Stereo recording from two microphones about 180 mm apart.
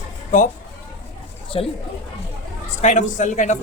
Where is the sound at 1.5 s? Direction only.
30° left (ahead or behind).